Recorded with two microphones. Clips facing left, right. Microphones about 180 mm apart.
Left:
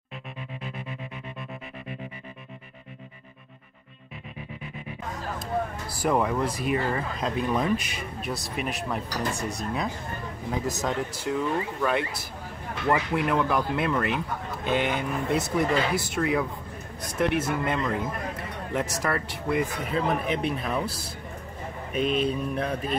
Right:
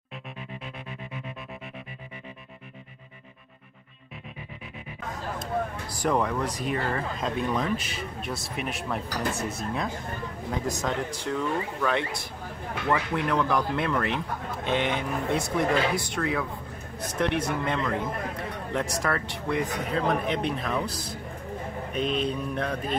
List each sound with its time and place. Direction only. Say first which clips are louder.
6.0 s speech: left 1 dB; 5° left (ahead or behind)
8.2 s speech: left 3 dB; centre (ahead or behind)
16.2 s speech: left 5 dB; 15° left (ahead or behind)
17.2 s speech: left 2 dB; 5° left (ahead or behind)
21.9 s speech: left 3 dB; 5° left (ahead or behind)